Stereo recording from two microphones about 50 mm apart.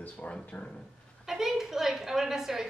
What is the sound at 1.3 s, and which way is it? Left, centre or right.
A woman's voice, centre.